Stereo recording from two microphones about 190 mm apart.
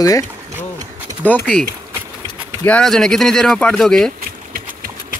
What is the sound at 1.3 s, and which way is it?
Speech, 5° left (ahead or behind).